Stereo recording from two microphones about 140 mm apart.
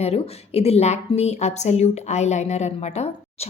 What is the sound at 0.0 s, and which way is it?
A woman's voice, 45° left (ahead or behind).